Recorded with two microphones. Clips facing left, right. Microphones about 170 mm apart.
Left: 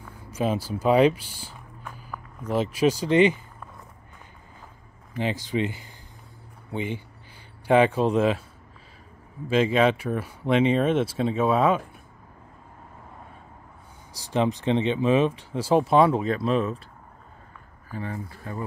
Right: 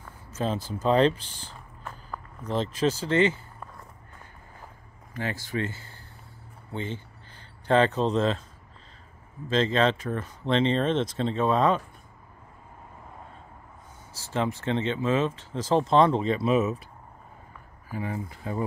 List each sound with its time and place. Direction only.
0.0 s speech: 10° left (ahead or behind)
5.1 s speech: 20° left (ahead or behind)
9.5 s speech: 10° left (ahead or behind)
14.1 s speech: 15° left (ahead or behind); by 16.7 s 5° right (ahead or behind)
17.8 s speech: 15° right (ahead or behind)